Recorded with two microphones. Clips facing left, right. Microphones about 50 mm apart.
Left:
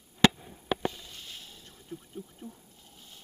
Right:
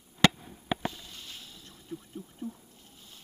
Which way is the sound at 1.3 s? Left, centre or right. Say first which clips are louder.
Even; left.